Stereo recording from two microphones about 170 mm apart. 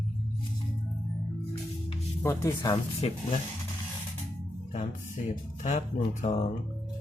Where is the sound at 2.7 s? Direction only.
35° left (ahead or behind).